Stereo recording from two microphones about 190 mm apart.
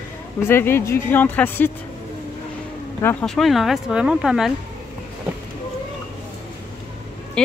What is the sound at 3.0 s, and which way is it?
Speech, 10° left (ahead or behind).